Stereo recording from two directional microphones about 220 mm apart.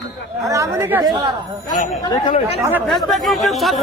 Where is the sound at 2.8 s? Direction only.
Centre (ahead or behind).